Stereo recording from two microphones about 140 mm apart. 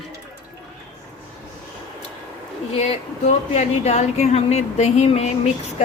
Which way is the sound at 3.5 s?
50° left (ahead or behind).